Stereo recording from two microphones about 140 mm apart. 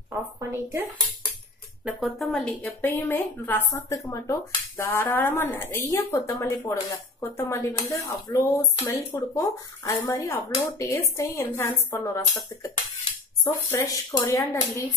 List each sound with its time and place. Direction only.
0.1 s a woman's voice: 15° right (ahead or behind)
1.9 s a woman's voice: centre (ahead or behind); by 12.1 s 25° left (ahead or behind)
13.4 s speech: 25° left (ahead or behind)